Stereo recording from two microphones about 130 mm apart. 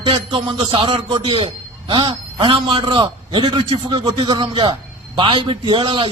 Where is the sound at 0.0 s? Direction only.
40° right (ahead or behind).